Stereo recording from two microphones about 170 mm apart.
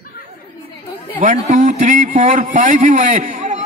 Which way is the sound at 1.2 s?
40° right (ahead or behind).